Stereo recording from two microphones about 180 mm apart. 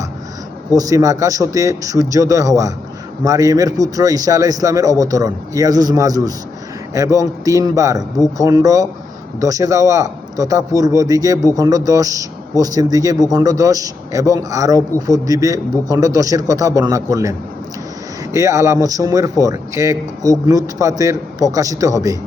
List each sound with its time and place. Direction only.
0.8 s a man's voice: 20° right (ahead or behind)
18.3 s a man's voice: 20° right (ahead or behind)